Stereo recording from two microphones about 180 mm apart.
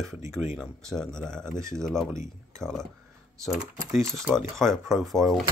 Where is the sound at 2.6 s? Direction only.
5° left (ahead or behind).